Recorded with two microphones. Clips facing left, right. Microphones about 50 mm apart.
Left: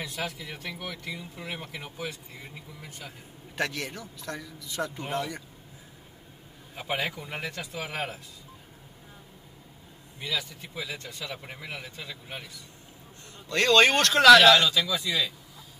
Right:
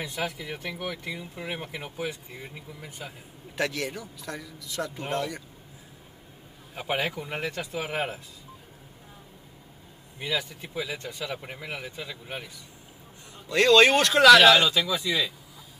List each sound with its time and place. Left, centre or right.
0.0 s a man's voice: centre
6.7 s speech: centre
10.2 s speech: centre
11.3 s speech: centre
13.5 s a man's voice: centre
14.7 s speech: right
15.0 s a man's voice: centre